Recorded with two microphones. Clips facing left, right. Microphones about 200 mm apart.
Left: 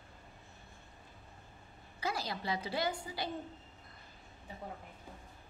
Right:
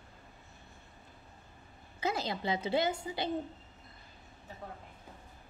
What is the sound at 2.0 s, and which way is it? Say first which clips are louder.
A woman's voice: right 4 dB; 20° right (ahead or behind).